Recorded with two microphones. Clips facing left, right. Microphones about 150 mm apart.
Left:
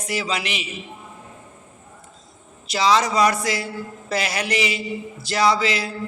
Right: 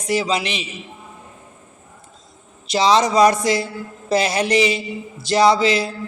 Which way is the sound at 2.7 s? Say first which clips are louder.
Right 4 dB; 20° right (ahead or behind).